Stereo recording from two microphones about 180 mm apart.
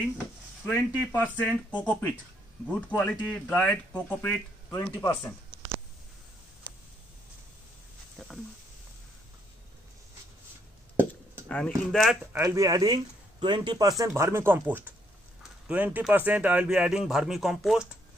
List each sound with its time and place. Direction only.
0.7 s speech: 10° left (ahead or behind)
8.2 s a sound: centre (ahead or behind)
11.4 s speech: 5° left (ahead or behind)
12.3 s speech: 15° right (ahead or behind); by 17.8 s centre (ahead or behind)